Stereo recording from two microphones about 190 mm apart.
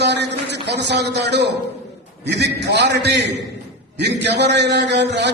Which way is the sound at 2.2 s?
65° right (ahead or behind).